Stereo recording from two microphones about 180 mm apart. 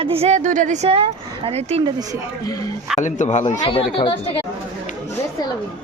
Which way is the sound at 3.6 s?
30° left (ahead or behind).